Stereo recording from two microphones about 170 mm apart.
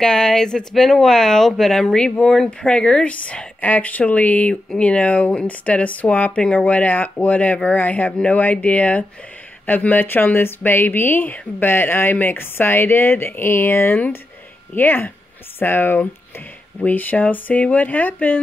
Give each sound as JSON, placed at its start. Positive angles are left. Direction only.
{"t": 0.0, "sound": "speech", "side_deg": 5}